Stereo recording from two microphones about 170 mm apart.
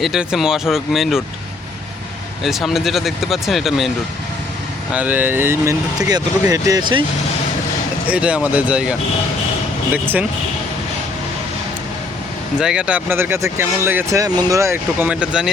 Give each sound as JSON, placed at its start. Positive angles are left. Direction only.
{"t": 0.0, "sound": "speech", "side_deg": -5}
{"t": 2.4, "sound": "speech", "side_deg": 0}
{"t": 4.9, "sound": "speech", "side_deg": -10}
{"t": 8.0, "sound": "speech", "side_deg": -5}
{"t": 12.5, "sound": "speech", "side_deg": -5}